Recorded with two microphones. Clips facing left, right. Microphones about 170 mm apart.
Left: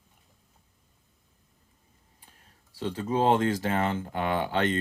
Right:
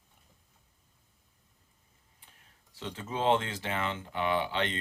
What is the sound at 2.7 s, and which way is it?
Speech, 35° left (ahead or behind).